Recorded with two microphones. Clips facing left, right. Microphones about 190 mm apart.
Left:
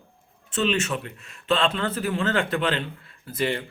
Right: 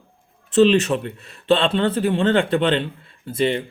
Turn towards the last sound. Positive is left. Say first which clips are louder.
# right 6 dB
turn(degrees=-25)  # may be behind; listen again after turning